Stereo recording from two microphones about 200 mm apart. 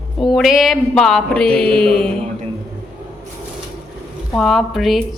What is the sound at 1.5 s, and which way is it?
Mantra, 25° right (ahead or behind).